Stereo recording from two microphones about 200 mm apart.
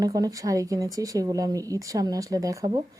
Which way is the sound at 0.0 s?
15° right (ahead or behind).